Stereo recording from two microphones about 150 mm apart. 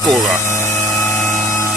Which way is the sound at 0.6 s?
20° left (ahead or behind).